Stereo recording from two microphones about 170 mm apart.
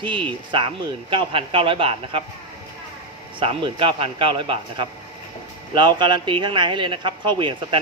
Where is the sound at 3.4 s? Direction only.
30° right (ahead or behind).